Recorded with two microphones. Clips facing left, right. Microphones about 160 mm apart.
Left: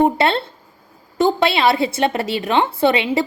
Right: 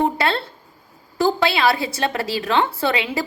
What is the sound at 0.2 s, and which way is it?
A woman's voice, 25° left (ahead or behind).